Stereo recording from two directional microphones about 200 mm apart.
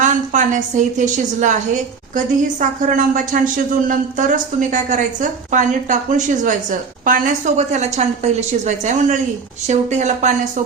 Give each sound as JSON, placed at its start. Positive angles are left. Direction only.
{"t": 0.0, "sound": "a woman's voice", "side_deg": -40}